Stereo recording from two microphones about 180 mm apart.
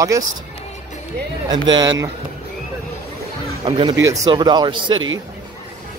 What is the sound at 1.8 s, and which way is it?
Speech, 20° right (ahead or behind).